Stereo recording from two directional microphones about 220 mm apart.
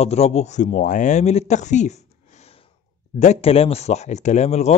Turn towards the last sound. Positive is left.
turn(degrees=30)  # may be behind; listen again after turning